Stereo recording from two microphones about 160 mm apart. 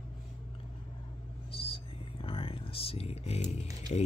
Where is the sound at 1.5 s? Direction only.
35° left (ahead or behind).